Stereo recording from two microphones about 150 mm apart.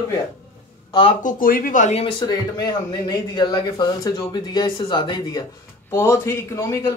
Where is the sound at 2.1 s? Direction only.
25° left (ahead or behind).